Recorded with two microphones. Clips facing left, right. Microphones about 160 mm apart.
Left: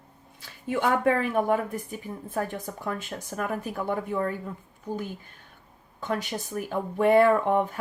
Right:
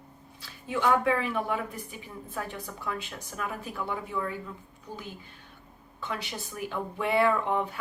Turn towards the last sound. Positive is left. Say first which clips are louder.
# left 5 dB
turn(degrees=45)  # may be behind; listen again after turning